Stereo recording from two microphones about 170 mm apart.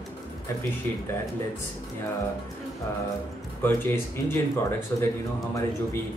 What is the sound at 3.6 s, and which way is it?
Speech, 15° left (ahead or behind).